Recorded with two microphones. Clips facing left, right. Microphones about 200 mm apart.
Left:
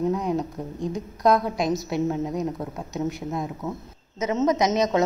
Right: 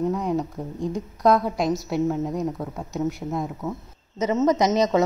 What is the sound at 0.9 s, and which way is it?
A woman's voice, 15° left (ahead or behind).